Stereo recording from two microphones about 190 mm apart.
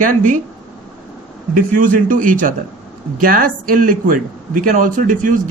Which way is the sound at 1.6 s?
45° right (ahead or behind).